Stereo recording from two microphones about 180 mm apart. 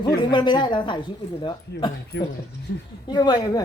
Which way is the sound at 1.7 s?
70° left (ahead or behind).